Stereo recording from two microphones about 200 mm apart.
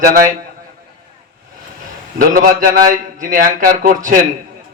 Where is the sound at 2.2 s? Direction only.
45° right (ahead or behind).